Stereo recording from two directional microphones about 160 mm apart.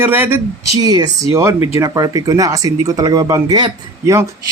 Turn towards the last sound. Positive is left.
turn(degrees=-20)  # may be behind; listen again after turning